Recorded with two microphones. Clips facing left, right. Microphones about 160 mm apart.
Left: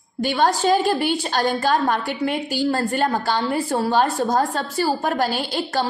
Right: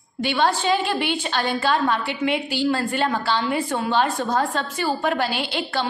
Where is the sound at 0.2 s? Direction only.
40° left (ahead or behind).